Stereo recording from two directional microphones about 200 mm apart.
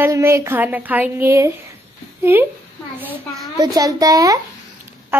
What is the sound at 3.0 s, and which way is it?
A woman's voice, 15° right (ahead or behind).